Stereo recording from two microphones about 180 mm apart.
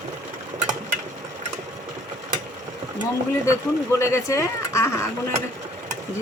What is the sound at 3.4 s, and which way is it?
Speech, 15° left (ahead or behind).